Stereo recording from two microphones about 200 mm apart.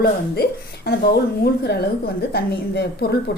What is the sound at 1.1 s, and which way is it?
A woman's voice, 50° left (ahead or behind).